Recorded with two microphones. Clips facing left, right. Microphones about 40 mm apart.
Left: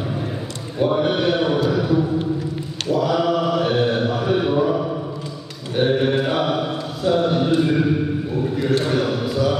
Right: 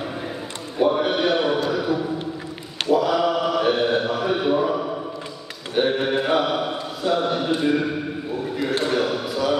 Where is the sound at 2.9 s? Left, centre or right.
Centre.